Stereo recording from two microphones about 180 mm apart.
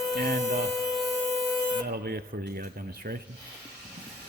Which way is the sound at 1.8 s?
60° right (ahead or behind).